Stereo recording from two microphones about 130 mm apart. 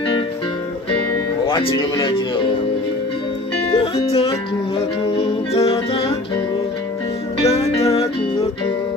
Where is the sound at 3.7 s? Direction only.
45° left (ahead or behind).